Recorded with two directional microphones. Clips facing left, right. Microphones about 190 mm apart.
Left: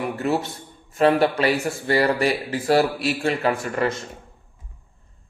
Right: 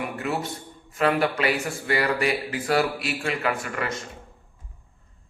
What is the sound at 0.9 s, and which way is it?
Speech, 30° left (ahead or behind).